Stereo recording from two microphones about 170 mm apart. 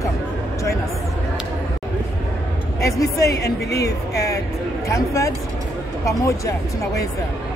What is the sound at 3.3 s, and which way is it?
Speech, 75° left (ahead or behind).